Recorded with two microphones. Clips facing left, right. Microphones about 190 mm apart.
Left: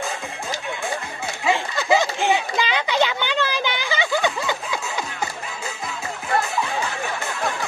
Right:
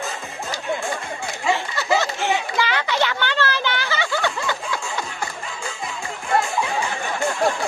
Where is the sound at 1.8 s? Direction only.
15° left (ahead or behind).